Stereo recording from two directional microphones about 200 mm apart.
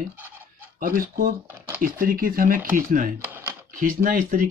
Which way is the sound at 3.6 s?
45° right (ahead or behind).